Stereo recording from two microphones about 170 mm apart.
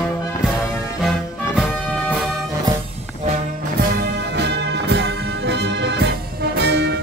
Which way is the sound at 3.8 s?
75° right (ahead or behind).